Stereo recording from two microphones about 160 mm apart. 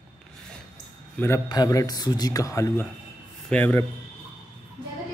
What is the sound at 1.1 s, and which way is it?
A man's voice, 15° left (ahead or behind).